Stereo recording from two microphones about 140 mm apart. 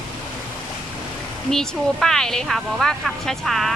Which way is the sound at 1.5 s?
5° left (ahead or behind).